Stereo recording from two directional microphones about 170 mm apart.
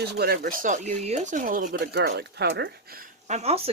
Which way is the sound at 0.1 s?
70° right (ahead or behind).